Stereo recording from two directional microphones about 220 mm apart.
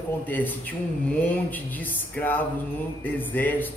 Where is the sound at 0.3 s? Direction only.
10° left (ahead or behind).